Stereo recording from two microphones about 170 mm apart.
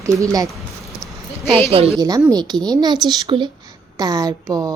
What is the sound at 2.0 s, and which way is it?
A child's voice, 20° right (ahead or behind).